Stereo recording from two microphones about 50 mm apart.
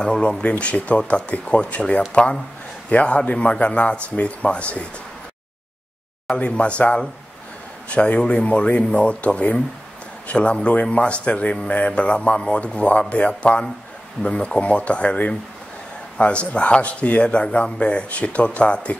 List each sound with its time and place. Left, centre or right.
0.0 s a man's voice: left
6.2 s a man's voice: left